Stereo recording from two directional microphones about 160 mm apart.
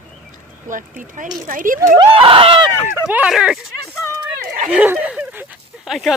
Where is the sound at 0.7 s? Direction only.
55° right (ahead or behind).